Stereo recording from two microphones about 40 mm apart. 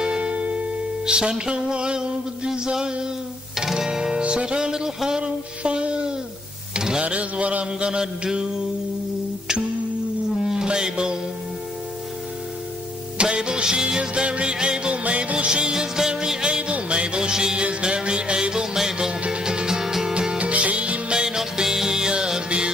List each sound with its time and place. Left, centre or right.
0.0 s music: right
4.2 s music: right
5.2 s music: right
6.7 s a sound: centre
7.0 s music: right
8.2 s music: centre
10.4 s music: centre
13.2 s music: right
20.2 s music: right
21.2 s music: centre